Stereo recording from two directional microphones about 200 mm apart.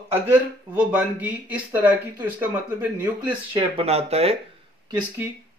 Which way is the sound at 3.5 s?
25° right (ahead or behind).